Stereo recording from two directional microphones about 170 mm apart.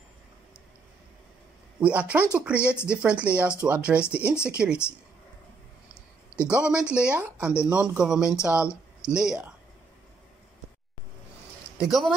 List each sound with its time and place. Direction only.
1.8 s speech: 10° right (ahead or behind)
6.4 s speech: 5° right (ahead or behind)
8.2 s speech: 20° left (ahead or behind)
8.5 s speech: 5° right (ahead or behind)
11.8 s speech: centre (ahead or behind)